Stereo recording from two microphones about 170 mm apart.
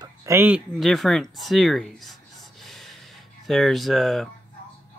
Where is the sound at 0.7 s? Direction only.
Centre (ahead or behind).